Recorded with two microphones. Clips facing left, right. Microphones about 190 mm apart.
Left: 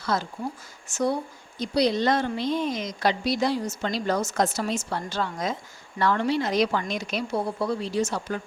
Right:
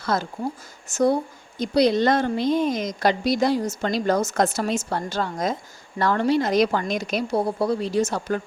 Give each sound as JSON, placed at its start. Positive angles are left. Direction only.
{"t": 0.0, "sound": "speech", "side_deg": -50}
{"t": 1.5, "sound": "a woman's voice", "side_deg": -50}